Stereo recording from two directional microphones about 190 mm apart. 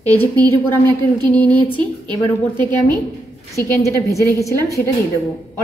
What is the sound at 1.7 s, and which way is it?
Speech, 25° right (ahead or behind).